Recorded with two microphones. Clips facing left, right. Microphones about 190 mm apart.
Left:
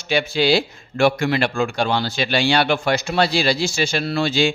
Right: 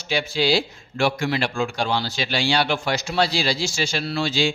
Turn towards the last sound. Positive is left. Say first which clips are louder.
# left 4 dB
turn(degrees=55)  # may be behind; listen again after turning